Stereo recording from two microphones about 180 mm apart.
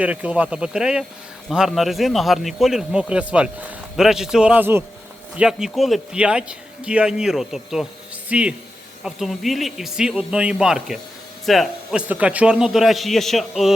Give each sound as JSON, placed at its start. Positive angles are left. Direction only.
{"t": 0.0, "sound": "speech", "side_deg": -10}